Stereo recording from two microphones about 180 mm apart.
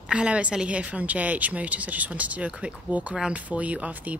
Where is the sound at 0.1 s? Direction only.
5° right (ahead or behind).